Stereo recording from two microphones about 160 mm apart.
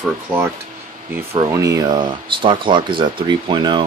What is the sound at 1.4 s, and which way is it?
Speech, 20° right (ahead or behind).